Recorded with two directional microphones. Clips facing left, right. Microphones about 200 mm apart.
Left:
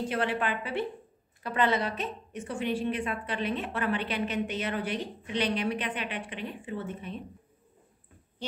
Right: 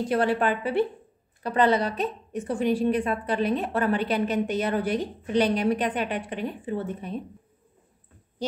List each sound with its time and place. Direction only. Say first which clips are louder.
0.1 s a woman's voice: right 10 dB; 40° right (ahead or behind)